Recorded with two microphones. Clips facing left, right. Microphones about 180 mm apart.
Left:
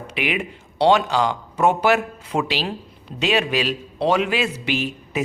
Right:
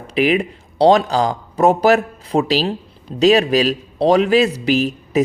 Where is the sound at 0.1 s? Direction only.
35° right (ahead or behind).